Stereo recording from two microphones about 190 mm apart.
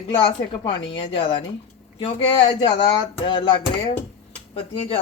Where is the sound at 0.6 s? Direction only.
25° left (ahead or behind).